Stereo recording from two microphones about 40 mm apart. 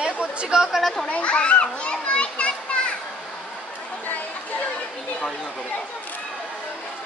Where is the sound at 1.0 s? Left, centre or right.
Left.